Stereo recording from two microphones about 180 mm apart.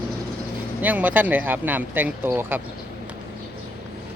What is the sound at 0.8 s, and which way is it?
Speech, 10° right (ahead or behind).